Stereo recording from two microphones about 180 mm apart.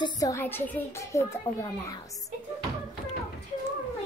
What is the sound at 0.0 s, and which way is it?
A child's voice, 20° left (ahead or behind).